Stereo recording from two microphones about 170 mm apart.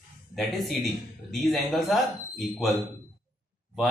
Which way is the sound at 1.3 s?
Centre (ahead or behind).